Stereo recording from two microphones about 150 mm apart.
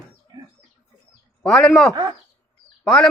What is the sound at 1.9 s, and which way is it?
Speech, 25° right (ahead or behind).